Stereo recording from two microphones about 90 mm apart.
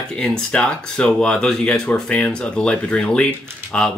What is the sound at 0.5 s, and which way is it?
Speech, 10° left (ahead or behind).